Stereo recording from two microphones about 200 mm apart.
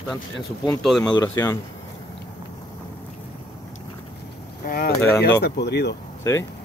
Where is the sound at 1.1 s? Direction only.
15° left (ahead or behind).